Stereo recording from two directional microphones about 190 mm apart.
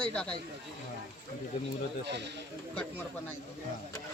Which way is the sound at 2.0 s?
65° right (ahead or behind).